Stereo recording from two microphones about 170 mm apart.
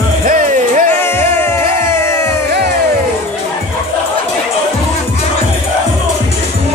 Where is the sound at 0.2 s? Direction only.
50° right (ahead or behind).